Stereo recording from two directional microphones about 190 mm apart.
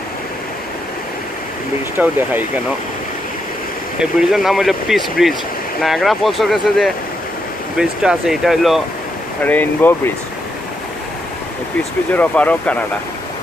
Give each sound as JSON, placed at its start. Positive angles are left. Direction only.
{"t": 2.0, "sound": "speech", "side_deg": -10}
{"t": 4.0, "sound": "speech", "side_deg": 0}
{"t": 9.4, "sound": "speech", "side_deg": 10}
{"t": 12.2, "sound": "speech", "side_deg": 5}